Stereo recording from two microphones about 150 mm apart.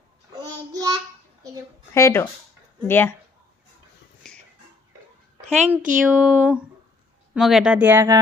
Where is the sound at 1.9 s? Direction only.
15° left (ahead or behind).